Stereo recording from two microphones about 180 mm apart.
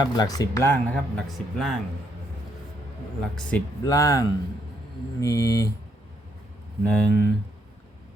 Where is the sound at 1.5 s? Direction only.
Centre (ahead or behind).